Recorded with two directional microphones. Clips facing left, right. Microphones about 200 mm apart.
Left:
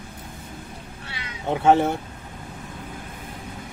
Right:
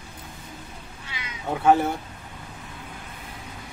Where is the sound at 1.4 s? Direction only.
25° left (ahead or behind).